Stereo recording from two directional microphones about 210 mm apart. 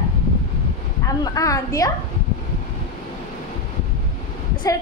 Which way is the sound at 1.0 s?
15° left (ahead or behind).